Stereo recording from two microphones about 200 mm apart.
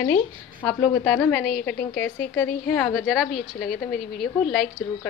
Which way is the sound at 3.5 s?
50° left (ahead or behind).